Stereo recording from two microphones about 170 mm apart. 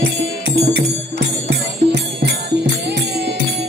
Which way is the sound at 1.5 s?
80° right.